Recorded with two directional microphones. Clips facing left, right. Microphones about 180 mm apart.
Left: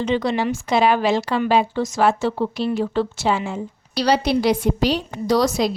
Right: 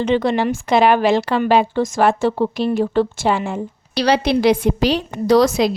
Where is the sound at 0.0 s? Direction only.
55° right (ahead or behind).